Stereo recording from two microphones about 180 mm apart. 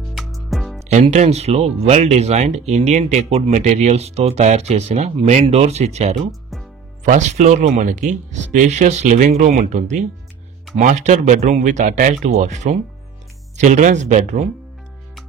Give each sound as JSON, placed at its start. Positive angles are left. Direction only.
{"t": 0.1, "sound": "music", "side_deg": 0}
{"t": 0.8, "sound": "speech", "side_deg": -40}